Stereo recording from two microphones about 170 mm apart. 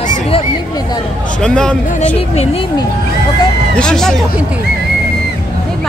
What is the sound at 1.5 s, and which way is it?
Speech, 5° left (ahead or behind).